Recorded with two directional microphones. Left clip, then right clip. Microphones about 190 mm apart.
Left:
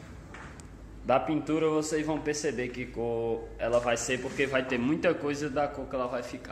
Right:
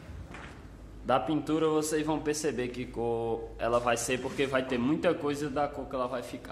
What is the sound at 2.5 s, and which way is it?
Speech, 55° right (ahead or behind).